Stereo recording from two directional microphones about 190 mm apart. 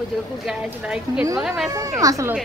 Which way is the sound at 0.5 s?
5° right (ahead or behind).